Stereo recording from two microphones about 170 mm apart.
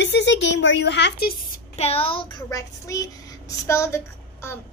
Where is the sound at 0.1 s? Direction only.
90° left.